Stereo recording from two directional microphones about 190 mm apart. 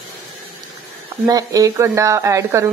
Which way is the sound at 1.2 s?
20° right (ahead or behind).